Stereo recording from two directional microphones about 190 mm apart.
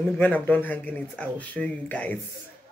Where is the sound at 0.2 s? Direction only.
10° left (ahead or behind).